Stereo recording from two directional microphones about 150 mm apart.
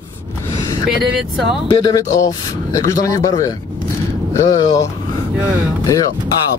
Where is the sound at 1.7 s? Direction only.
25° left (ahead or behind).